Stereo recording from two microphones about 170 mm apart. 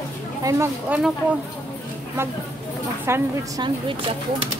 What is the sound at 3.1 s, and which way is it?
Speech, 15° right (ahead or behind).